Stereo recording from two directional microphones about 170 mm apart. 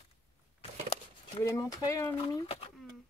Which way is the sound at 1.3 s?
20° left (ahead or behind).